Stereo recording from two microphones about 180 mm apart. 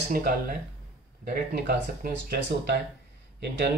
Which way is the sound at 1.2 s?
60° right (ahead or behind).